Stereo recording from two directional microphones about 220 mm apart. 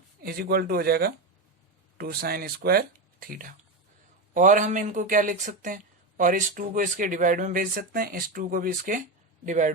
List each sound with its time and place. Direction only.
0.2 s speech: 45° right (ahead or behind)